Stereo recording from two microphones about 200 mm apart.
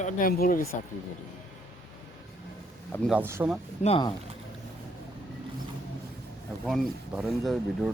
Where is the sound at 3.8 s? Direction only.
25° left (ahead or behind).